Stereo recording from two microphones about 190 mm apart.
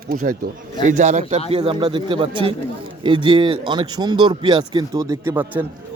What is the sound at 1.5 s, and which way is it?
Speech, 30° right (ahead or behind).